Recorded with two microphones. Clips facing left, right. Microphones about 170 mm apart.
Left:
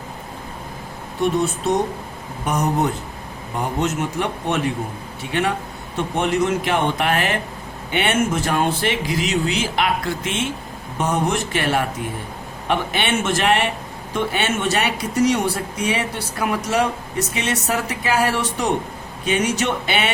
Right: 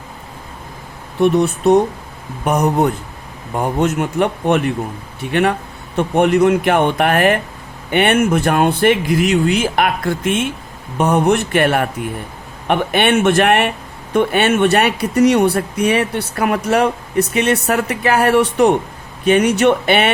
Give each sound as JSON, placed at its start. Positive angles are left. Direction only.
{"t": 1.2, "sound": "speech", "side_deg": -60}